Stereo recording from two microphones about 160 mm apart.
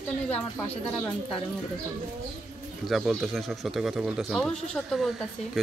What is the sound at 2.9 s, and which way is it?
Speech, centre (ahead or behind).